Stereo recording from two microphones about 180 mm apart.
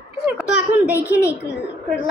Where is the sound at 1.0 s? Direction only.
15° left (ahead or behind).